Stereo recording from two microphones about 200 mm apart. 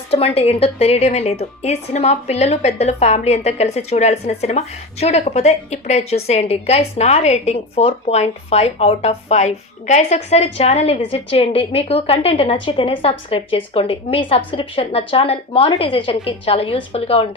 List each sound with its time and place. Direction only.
0.1 s a woman's voice: 30° left (ahead or behind)